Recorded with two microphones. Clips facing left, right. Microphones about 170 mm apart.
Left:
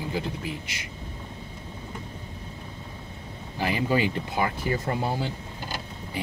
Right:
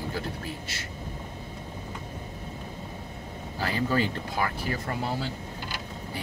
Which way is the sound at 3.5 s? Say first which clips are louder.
Left 2 dB; 15° left (ahead or behind).